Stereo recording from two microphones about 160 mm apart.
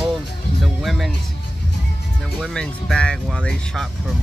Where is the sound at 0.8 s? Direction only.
Centre (ahead or behind).